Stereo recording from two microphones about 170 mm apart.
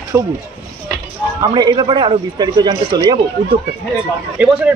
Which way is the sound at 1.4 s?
25° right (ahead or behind).